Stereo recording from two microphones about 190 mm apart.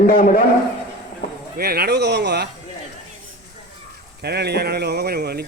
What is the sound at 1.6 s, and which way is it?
Speech, 55° right (ahead or behind).